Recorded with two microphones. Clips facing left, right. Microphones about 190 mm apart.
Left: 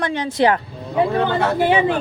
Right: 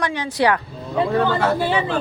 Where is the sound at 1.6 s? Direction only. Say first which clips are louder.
Left 5 dB; 15° left (ahead or behind).